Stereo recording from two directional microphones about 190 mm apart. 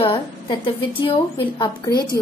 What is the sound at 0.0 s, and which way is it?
A woman's voice, 25° left (ahead or behind).